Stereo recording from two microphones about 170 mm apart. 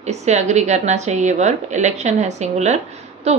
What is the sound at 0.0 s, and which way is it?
A woman's voice, 40° right (ahead or behind).